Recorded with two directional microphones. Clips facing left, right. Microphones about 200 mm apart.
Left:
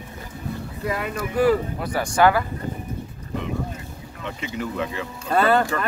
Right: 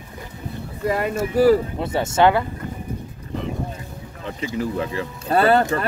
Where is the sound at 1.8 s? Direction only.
25° right (ahead or behind).